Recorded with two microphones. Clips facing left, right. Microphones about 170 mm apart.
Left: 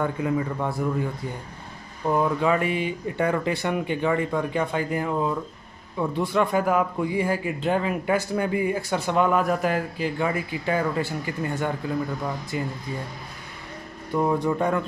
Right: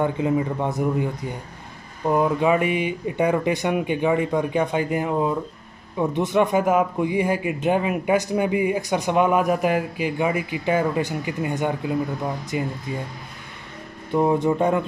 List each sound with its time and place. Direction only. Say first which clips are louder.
0.0 s a man's voice: right 3 dB; 20° right (ahead or behind)
2.0 s a man's voice: right 3 dB; 15° right (ahead or behind)
14.1 s a man's voice: right 3 dB; 20° right (ahead or behind)